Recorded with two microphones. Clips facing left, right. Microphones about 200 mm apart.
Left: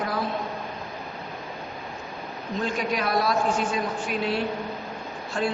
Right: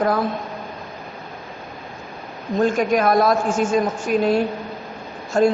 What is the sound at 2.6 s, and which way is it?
A woman's voice, 50° right (ahead or behind).